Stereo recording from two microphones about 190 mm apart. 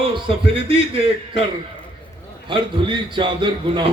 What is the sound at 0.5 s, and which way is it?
Speech, 30° right (ahead or behind).